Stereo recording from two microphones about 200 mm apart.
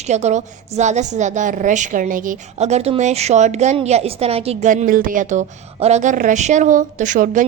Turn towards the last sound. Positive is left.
turn(degrees=-40)  # may be behind; listen again after turning